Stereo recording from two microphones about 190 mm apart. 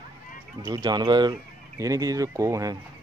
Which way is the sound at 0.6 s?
15° right (ahead or behind).